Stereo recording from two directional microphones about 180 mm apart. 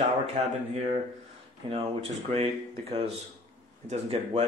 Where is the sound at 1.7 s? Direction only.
30° right (ahead or behind).